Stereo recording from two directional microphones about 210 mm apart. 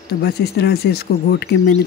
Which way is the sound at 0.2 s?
50° left (ahead or behind).